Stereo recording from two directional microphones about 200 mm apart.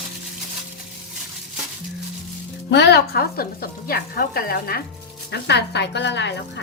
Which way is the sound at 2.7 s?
55° left (ahead or behind).